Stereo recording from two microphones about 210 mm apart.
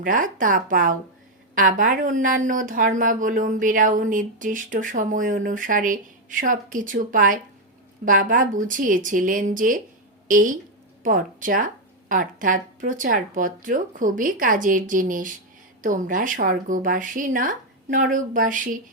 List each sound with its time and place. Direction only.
0.0 s speech: 40° right (ahead or behind)